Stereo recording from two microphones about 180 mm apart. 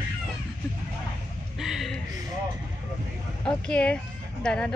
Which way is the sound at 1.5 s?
Centre (ahead or behind).